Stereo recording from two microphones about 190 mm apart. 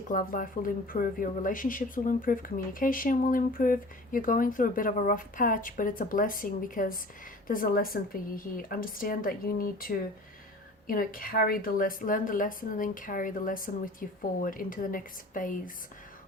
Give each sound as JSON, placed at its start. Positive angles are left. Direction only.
{"t": 0.1, "sound": "speech", "side_deg": 45}